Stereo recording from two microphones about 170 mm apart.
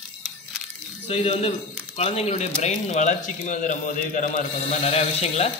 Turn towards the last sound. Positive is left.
turn(degrees=40)  # may be behind; listen again after turning